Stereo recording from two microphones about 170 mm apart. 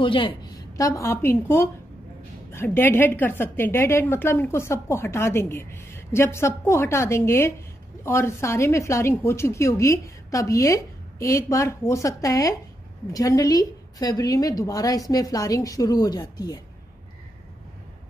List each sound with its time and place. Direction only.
0.0 s a woman's voice: 30° left (ahead or behind)